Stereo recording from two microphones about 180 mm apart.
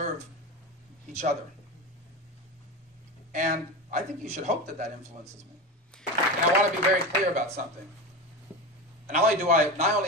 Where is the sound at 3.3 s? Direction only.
45° right (ahead or behind).